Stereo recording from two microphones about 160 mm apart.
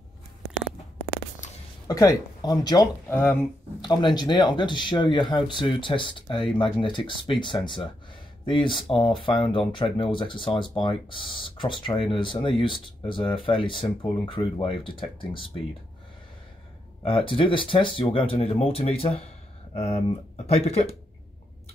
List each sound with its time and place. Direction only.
1.9 s speech: 20° left (ahead or behind)
3.1 s speech: 10° left (ahead or behind)
3.8 s speech: 25° left (ahead or behind)
17.0 s speech: 35° left (ahead or behind)